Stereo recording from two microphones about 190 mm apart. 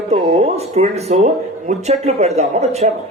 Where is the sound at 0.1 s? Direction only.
30° right (ahead or behind).